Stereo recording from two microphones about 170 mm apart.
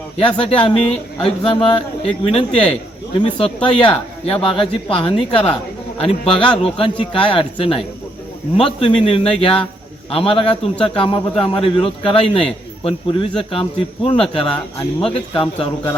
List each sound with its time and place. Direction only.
0.2 s a man's voice: 30° left (ahead or behind)